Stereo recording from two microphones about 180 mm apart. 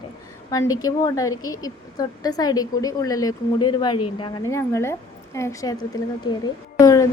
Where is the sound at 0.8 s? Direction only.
20° left (ahead or behind).